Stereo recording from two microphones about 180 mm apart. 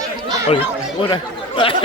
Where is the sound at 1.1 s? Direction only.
30° left (ahead or behind).